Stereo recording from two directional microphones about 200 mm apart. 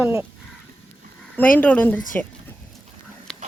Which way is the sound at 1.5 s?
10° left (ahead or behind).